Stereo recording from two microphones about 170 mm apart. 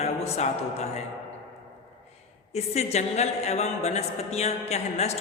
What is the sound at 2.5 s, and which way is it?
A woman's voice, 40° left (ahead or behind).